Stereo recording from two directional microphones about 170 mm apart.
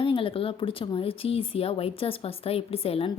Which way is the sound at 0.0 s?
30° left (ahead or behind).